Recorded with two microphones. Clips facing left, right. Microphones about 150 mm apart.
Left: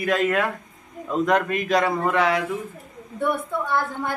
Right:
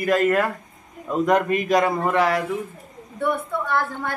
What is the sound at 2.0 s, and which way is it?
Speech, centre (ahead or behind).